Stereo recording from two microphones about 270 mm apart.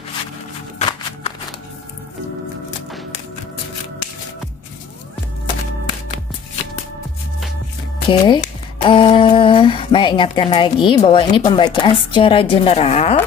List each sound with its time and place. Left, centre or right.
0.7 s music: left
8.1 s speech: centre